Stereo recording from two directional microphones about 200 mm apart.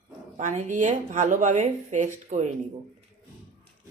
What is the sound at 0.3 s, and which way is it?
Speech, 40° right (ahead or behind).